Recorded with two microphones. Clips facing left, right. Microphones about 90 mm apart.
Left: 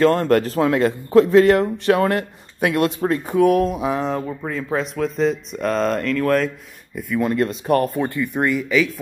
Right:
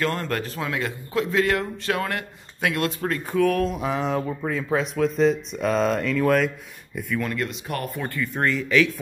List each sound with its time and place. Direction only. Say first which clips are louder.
0.0 s a man's voice: left 10 dB; 40° left (ahead or behind); by 6.5 s 5° right (ahead or behind)
7.2 s a man's voice: left 8 dB; 25° left (ahead or behind)
7.4 s speech: left 11 dB; 35° left (ahead or behind)
8.0 s speech: left 4 dB; 20° left (ahead or behind); by 9.0 s 5° left (ahead or behind)